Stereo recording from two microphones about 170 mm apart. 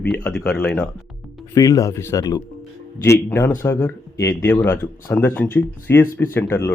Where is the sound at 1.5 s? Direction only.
20° left (ahead or behind).